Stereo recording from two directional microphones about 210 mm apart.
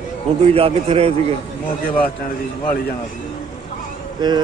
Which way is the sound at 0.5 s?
30° right (ahead or behind).